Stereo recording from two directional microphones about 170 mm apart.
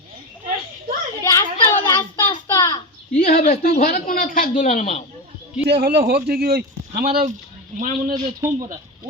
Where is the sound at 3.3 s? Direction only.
50° left (ahead or behind).